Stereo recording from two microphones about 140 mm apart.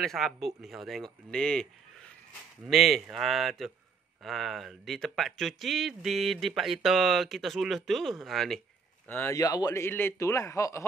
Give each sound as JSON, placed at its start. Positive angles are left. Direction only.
{"t": 0.0, "sound": "speech", "side_deg": 0}
{"t": 9.0, "sound": "speech", "side_deg": 15}
{"t": 9.3, "sound": "a man's voice", "side_deg": 25}